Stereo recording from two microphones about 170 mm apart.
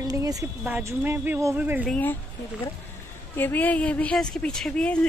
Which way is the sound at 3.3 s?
10° left (ahead or behind).